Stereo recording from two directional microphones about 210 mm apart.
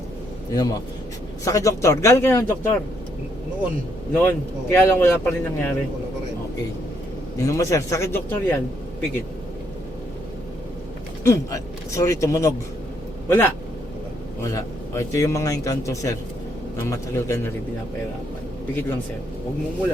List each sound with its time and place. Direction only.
0.5 s a man's voice: 20° left (ahead or behind)
4.1 s a man's voice: 10° left (ahead or behind)
7.3 s a man's voice: 15° left (ahead or behind)
11.2 s a man's voice: 15° left (ahead or behind)
14.5 s a man's voice: 15° left (ahead or behind)